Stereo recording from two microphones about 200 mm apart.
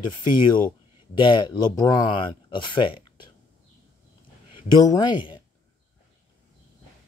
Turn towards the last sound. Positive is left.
turn(degrees=25)  # may be behind; listen again after turning